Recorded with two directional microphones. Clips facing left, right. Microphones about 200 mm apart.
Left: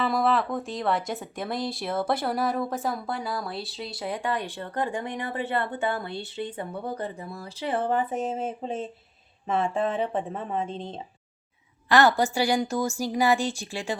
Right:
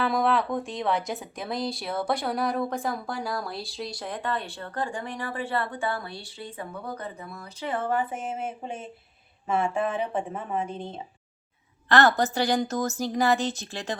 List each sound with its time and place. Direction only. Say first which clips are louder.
0.0 s speech: even; centre (ahead or behind); by 8.0 s 20° left (ahead or behind)
8.1 s speech: left 4 dB; 35° left (ahead or behind)
11.9 s a woman's voice: left 1 dB; 10° left (ahead or behind)